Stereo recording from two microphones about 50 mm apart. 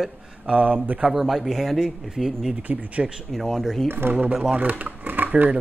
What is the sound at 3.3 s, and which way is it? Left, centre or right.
Speech, centre.